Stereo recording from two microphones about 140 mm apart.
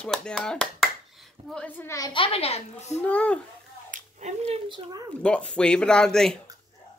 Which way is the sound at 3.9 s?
55° right (ahead or behind).